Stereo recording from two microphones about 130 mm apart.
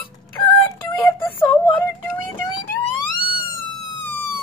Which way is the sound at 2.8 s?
40° left (ahead or behind).